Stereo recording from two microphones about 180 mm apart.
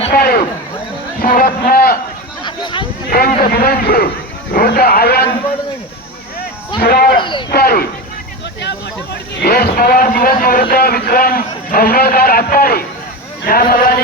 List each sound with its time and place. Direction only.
0.1 s a sound: 55° left (ahead or behind)
1.4 s a man's voice: 55° left (ahead or behind)
2.4 s a sound: 25° left (ahead or behind)
3.1 s a man's voice: 50° left (ahead or behind)
6.7 s a man's voice: 55° left (ahead or behind)
7.2 s speech: 25° left (ahead or behind)
7.5 s a man's voice: 60° left (ahead or behind)
9.3 s a man's voice: 60° left (ahead or behind)